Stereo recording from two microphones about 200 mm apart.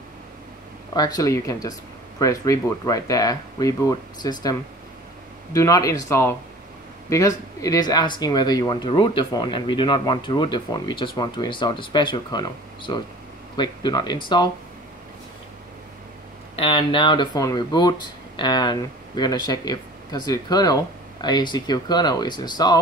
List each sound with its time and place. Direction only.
0.9 s speech: 20° left (ahead or behind)
16.5 s speech: 25° left (ahead or behind)